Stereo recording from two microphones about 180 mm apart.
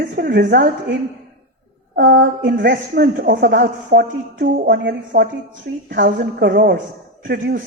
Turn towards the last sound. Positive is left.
turn(degrees=-55)  # may be behind; listen again after turning